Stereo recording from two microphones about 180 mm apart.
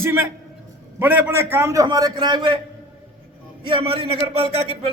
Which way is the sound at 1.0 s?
10° right (ahead or behind).